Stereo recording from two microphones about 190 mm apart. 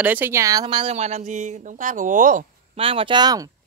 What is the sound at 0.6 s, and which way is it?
Speech, 30° right (ahead or behind).